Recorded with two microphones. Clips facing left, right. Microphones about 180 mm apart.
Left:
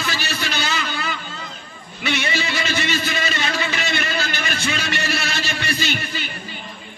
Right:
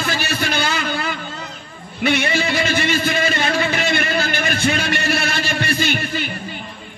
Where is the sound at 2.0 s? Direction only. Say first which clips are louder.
Right 5 dB; 55° right (ahead or behind).